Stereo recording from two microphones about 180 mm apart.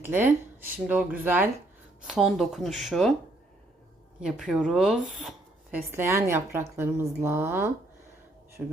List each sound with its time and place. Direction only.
0.0 s speech: 10° right (ahead or behind)
4.2 s speech: 5° right (ahead or behind)
5.7 s speech: 15° right (ahead or behind)